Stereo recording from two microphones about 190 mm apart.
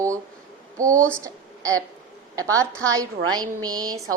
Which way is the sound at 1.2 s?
15° right (ahead or behind).